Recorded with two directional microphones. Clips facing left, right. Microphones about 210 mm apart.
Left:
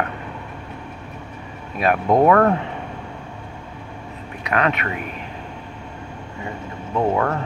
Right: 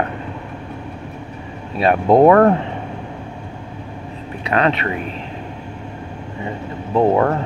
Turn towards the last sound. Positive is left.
turn(degrees=-30)  # may be behind; listen again after turning